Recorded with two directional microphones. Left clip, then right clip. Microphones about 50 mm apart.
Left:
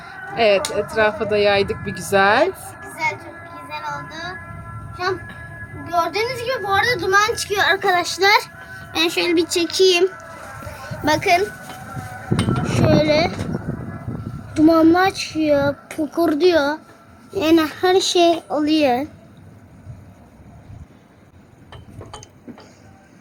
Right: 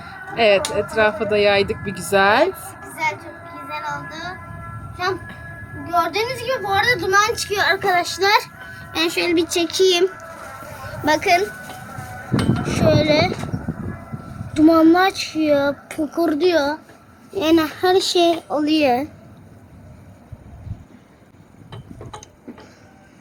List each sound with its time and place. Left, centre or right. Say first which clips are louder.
0.0 s a sound: even; centre
0.7 s speech: even; centre
2.8 s music: even; left
3.4 s music: right 2 dB; left
5.8 s a woman's voice: even; left
8.3 s a child's voice: left 1 dB; left
10.6 s a sound: even; left
10.9 s a sound: even; left
11.2 s speech: left 1 dB; centre
12.6 s speech: even; centre
14.5 s speech: even; centre
16.2 s speech: left 2 dB; left
17.3 s speech: left 1 dB; left; by 19.0 s centre